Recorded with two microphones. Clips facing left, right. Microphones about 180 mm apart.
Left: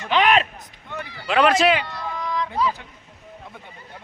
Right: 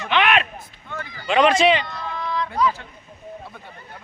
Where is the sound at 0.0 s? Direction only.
40° left (ahead or behind).